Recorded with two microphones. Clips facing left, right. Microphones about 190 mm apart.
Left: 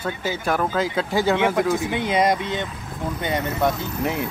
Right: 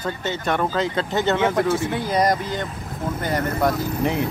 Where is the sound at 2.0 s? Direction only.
25° left (ahead or behind).